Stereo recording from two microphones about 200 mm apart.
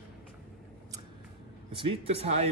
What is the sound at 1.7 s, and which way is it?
Speech, 30° right (ahead or behind).